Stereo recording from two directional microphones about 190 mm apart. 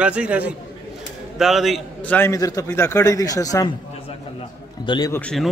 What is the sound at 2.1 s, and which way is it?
A man's voice, 15° left (ahead or behind).